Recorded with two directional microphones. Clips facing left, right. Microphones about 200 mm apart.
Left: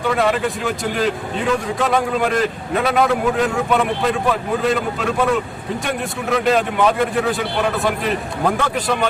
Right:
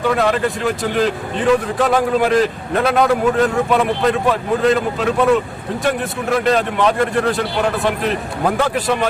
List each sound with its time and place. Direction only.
0.2 s speech: centre (ahead or behind)